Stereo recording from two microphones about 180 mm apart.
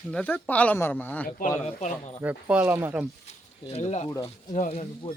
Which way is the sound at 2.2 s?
10° right (ahead or behind).